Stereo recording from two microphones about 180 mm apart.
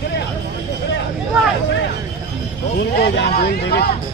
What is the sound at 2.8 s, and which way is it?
Speech, 65° left (ahead or behind).